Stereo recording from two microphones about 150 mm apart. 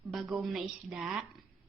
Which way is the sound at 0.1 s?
Centre (ahead or behind).